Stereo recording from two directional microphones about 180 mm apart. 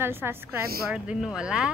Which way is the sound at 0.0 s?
10° right (ahead or behind).